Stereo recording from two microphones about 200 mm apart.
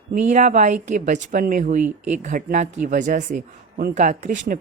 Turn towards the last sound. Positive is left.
turn(degrees=-40)  # may be behind; listen again after turning